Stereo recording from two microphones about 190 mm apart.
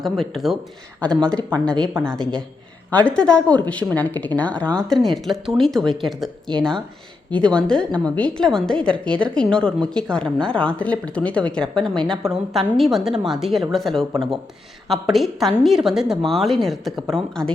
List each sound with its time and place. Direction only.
0.0 s a woman's voice: centre (ahead or behind)